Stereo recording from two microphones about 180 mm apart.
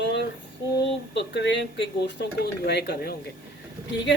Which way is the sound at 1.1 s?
75° left (ahead or behind).